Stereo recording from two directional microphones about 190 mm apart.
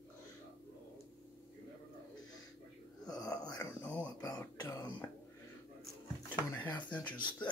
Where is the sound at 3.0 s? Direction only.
20° left (ahead or behind).